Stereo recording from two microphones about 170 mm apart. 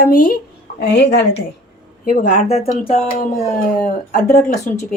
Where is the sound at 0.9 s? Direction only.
90° left.